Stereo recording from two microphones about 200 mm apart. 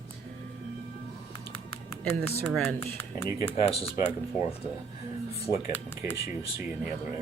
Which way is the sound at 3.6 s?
30° left (ahead or behind).